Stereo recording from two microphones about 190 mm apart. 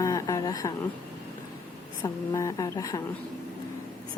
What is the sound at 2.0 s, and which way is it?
Speech, 20° left (ahead or behind).